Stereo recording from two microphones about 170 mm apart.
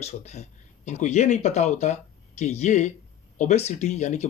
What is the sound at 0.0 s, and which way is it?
Speech, 40° left (ahead or behind).